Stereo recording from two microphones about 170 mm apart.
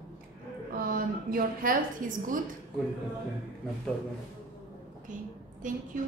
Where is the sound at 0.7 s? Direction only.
55° right (ahead or behind).